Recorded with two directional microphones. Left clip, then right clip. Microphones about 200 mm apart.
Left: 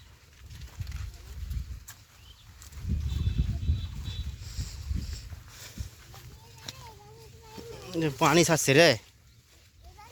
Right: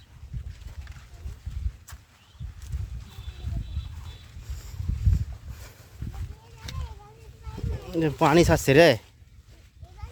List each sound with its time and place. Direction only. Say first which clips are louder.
7.8 s speech: right 4 dB; 20° right (ahead or behind)